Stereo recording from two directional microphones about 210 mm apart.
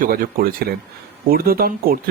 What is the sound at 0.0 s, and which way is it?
Speech, 45° right (ahead or behind).